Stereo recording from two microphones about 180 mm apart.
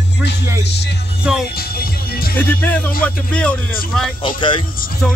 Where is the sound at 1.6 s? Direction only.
55° left (ahead or behind).